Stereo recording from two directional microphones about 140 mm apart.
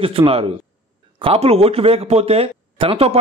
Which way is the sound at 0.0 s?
40° right (ahead or behind).